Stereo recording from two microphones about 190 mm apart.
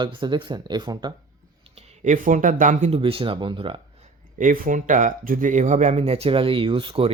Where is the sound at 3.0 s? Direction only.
30° right (ahead or behind).